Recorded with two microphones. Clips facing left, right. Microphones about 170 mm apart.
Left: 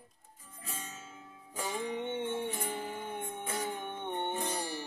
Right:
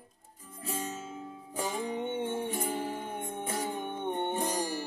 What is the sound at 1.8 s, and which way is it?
Music, 35° right (ahead or behind).